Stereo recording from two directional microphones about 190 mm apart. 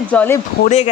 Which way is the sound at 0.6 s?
40° left (ahead or behind).